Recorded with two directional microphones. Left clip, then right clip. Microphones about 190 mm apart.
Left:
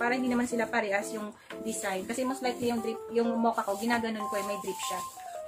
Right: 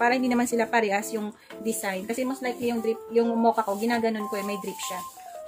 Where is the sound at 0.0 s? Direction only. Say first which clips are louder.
Right 6 dB; 60° right (ahead or behind).